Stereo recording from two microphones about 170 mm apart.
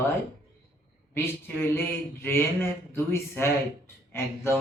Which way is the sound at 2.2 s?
15° left (ahead or behind).